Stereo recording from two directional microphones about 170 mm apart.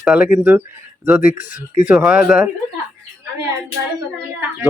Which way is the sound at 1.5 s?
50° left (ahead or behind).